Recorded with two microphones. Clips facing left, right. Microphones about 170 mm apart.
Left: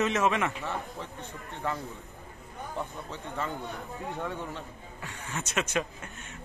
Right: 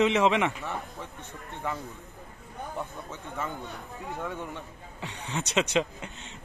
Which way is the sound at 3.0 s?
10° right (ahead or behind).